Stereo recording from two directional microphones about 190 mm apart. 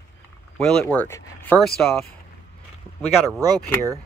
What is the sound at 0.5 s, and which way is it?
Speech, 5° left (ahead or behind).